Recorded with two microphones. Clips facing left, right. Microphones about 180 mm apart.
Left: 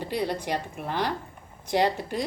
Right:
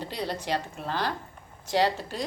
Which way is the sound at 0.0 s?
10° left (ahead or behind).